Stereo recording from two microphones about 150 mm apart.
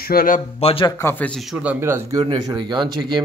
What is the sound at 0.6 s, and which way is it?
Speech, 40° left (ahead or behind).